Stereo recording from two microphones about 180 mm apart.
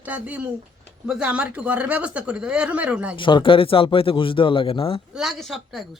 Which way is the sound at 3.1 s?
25° left (ahead or behind).